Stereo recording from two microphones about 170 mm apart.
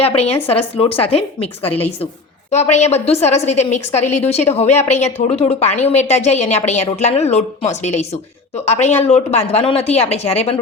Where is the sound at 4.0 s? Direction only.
10° left (ahead or behind).